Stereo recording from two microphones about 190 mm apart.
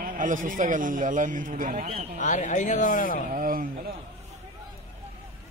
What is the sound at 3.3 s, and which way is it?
Speech, 50° right (ahead or behind).